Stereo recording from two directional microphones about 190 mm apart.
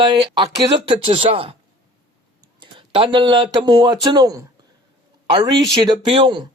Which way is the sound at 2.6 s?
25° right (ahead or behind).